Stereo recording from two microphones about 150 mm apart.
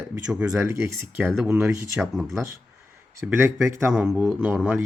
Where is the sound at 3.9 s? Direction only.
5° right (ahead or behind).